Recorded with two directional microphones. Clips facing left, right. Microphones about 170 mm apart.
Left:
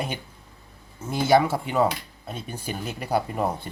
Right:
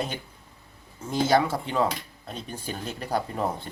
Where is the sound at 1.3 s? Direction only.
10° left (ahead or behind).